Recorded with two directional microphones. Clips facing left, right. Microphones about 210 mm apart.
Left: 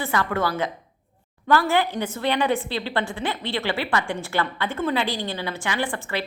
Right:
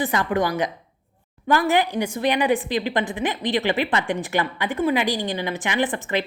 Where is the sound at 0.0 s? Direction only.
20° right (ahead or behind).